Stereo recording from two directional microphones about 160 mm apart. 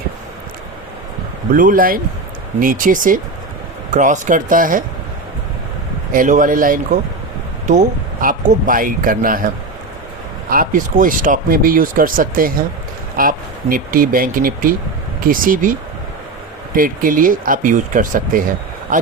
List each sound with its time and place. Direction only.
1.5 s speech: 60° right (ahead or behind)
6.1 s speech: 55° right (ahead or behind)
10.5 s speech: 60° right (ahead or behind)
16.7 s speech: 60° right (ahead or behind)